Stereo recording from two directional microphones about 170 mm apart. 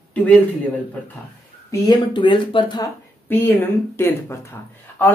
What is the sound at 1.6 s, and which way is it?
Speech, 25° left (ahead or behind).